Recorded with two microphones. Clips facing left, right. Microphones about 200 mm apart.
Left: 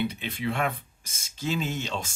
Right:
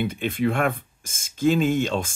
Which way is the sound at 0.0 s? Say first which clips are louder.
Right 6 dB; 50° right (ahead or behind).